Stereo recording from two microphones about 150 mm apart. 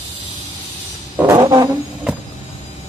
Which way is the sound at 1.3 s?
25° right (ahead or behind).